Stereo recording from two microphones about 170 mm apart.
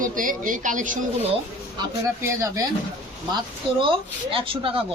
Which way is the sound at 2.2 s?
15° right (ahead or behind).